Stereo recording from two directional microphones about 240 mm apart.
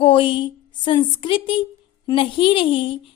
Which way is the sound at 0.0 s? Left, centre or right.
Left.